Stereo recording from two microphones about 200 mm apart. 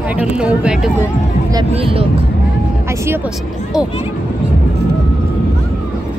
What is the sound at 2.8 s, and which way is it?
Speech, 15° right (ahead or behind).